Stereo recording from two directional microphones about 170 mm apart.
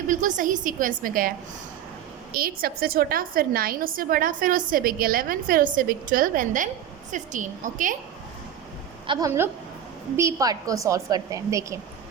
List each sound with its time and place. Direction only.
0.1 s a woman's voice: 50° right (ahead or behind)
2.3 s a woman's voice: 60° right (ahead or behind)
9.0 s a woman's voice: 20° right (ahead or behind)